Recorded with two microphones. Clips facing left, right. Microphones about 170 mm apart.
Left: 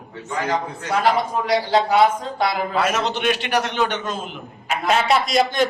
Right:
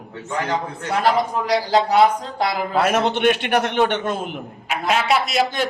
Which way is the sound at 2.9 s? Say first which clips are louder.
Right 4 dB; 55° right (ahead or behind).